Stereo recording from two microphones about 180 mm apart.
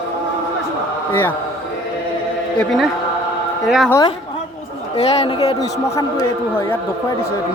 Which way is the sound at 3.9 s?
20° left (ahead or behind).